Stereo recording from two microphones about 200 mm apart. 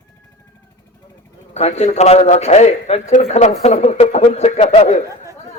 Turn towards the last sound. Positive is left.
turn(degrees=30)  # may be behind; listen again after turning